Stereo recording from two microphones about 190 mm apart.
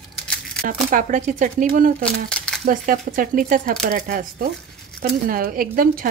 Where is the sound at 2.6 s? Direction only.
45° right (ahead or behind).